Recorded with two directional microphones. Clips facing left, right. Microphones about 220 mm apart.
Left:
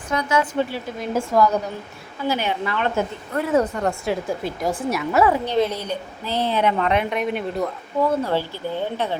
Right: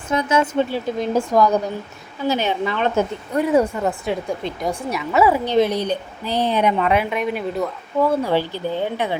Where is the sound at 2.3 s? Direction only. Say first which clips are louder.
Right 3 dB; 25° right (ahead or behind); by 8.1 s centre (ahead or behind).